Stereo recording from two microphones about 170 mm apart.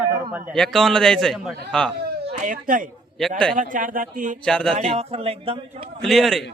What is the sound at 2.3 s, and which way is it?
Speech, 50° right (ahead or behind).